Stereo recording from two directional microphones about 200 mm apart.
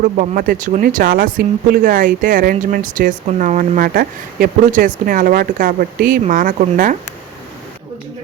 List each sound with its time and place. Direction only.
0.0 s speech: 45° right (ahead or behind)